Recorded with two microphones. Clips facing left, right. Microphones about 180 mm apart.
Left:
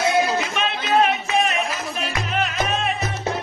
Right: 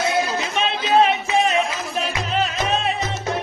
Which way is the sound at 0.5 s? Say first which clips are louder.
Right 6 dB; 30° right (ahead or behind).